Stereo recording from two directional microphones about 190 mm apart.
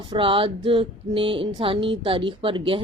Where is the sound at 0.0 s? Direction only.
25° right (ahead or behind).